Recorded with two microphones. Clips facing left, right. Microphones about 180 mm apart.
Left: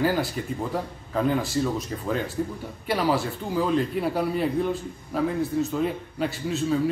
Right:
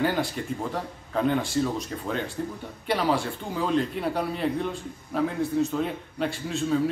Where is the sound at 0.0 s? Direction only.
5° left (ahead or behind).